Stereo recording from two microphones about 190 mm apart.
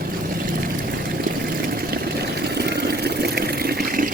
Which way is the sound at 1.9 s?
60° right (ahead or behind).